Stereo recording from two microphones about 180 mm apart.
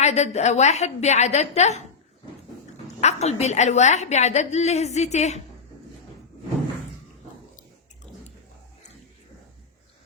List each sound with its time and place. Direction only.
0.0 s a woman's voice: 40° left (ahead or behind)
2.8 s a woman's voice: 40° left (ahead or behind)